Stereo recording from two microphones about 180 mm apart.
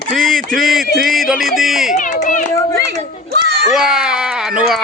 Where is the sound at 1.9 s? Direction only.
45° left (ahead or behind).